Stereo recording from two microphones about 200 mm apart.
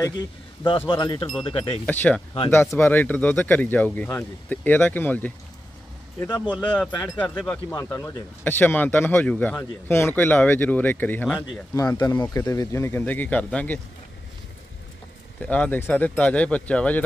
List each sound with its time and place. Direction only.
0.8 s speech: 25° left (ahead or behind)
1.9 s speech: 5° left (ahead or behind)
15.4 s speech: 5° left (ahead or behind)